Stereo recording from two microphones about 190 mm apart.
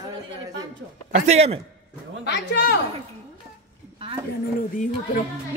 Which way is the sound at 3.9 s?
25° right (ahead or behind).